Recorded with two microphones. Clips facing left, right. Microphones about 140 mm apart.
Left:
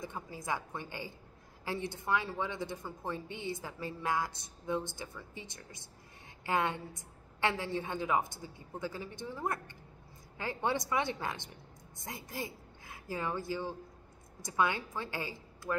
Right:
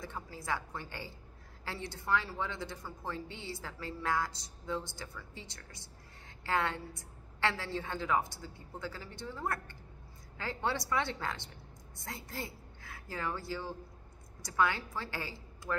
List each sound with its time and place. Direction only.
0.0 s a woman's voice: 20° left (ahead or behind)